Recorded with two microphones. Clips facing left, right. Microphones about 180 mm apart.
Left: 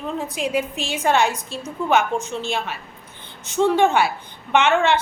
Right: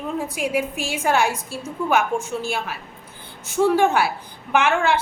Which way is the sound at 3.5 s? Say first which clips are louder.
Even; 10° right (ahead or behind).